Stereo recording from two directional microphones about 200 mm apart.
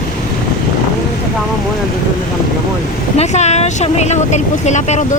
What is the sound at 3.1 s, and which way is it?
Speech, 35° left (ahead or behind).